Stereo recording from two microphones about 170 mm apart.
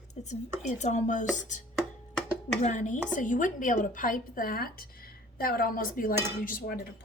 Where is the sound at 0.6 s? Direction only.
45° left (ahead or behind).